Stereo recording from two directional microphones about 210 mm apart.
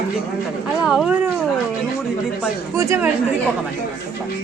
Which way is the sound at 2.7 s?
15° right (ahead or behind).